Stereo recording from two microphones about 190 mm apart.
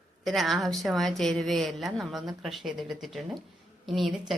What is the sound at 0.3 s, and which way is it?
A woman's voice, centre (ahead or behind).